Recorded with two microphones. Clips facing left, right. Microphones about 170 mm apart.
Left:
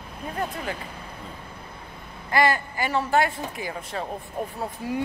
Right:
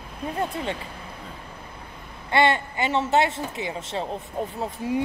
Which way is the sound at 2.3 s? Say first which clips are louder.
Right 1 dB; 25° right (ahead or behind).